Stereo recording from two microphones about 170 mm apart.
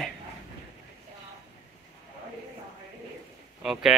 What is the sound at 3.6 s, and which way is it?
Speech, centre (ahead or behind).